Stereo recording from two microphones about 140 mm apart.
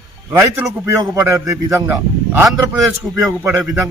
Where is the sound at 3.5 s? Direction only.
Centre (ahead or behind).